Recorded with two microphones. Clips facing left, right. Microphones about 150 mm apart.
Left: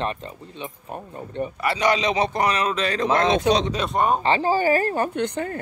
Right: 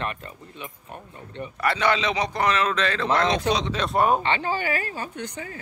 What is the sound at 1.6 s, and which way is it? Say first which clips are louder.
A man's voice: left 1 dB; 10° left (ahead or behind).